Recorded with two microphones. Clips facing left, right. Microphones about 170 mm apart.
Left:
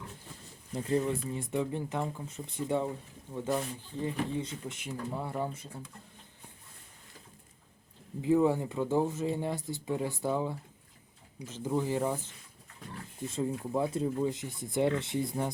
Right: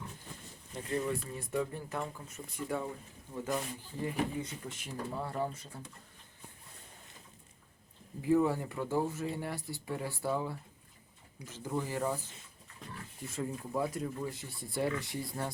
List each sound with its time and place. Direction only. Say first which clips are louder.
0.9 s speech: left 4 dB; 25° left (ahead or behind)
8.2 s speech: left 3 dB; 20° left (ahead or behind)
13.2 s speech: left 5 dB; 20° left (ahead or behind)